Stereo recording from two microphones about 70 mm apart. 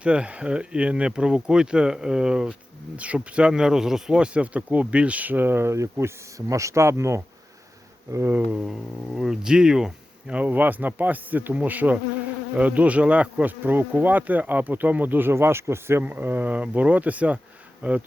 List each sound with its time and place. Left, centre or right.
0.0 s speech: centre; by 7.2 s right
8.4 s speech: centre
10.3 s speech: right
16.0 s speech: right